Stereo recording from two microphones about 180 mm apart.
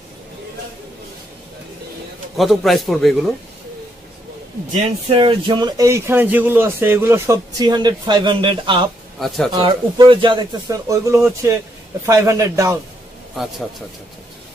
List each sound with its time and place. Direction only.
2.3 s a man's voice: centre (ahead or behind)
4.7 s speech: 35° right (ahead or behind); by 12.7 s 15° right (ahead or behind)